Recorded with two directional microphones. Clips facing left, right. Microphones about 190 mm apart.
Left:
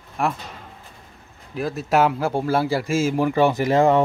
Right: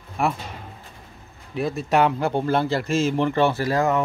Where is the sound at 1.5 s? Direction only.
Centre (ahead or behind); by 3.8 s 15° left (ahead or behind).